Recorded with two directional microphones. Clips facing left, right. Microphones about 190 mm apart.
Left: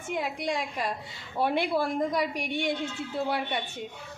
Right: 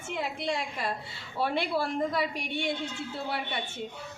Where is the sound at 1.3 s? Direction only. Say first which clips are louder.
Left 3 dB; 15° left (ahead or behind).